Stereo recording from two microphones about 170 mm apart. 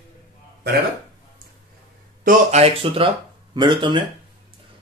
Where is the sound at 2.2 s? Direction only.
40° right (ahead or behind).